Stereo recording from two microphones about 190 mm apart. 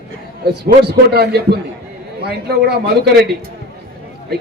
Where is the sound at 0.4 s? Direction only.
55° right (ahead or behind).